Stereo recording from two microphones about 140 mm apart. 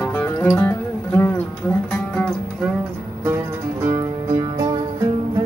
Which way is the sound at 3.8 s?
25° right (ahead or behind).